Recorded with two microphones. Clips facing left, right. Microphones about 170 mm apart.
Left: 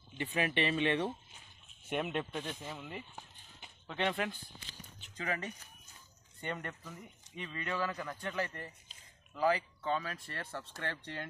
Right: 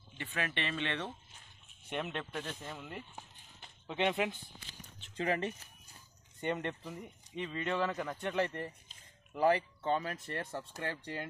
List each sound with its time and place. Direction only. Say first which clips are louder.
0.2 s speech: left 5 dB; 15° left (ahead or behind)
3.8 s speech: right 2 dB; 15° right (ahead or behind)
5.1 s a man's voice: right 5 dB; 30° right (ahead or behind); by 11.2 s 10° right (ahead or behind)